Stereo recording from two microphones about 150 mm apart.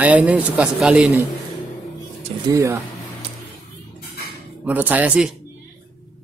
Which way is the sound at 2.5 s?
20° right (ahead or behind).